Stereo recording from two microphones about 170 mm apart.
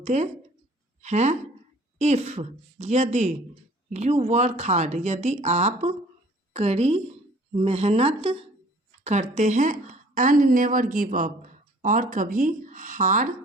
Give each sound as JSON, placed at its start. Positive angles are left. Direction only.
{"t": 0.0, "sound": "speech", "side_deg": -40}